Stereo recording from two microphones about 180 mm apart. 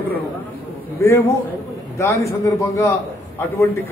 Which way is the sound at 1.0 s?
15° left (ahead or behind).